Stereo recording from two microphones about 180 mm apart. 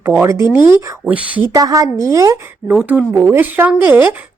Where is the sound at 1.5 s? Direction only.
20° right (ahead or behind).